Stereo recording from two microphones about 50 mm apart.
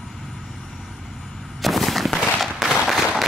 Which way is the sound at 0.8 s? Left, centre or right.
Centre.